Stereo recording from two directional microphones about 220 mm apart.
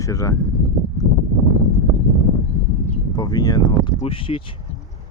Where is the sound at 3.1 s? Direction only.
20° left (ahead or behind).